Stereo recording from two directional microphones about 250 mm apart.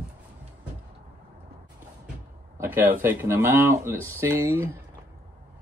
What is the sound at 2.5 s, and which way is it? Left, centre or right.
A man's voice, centre.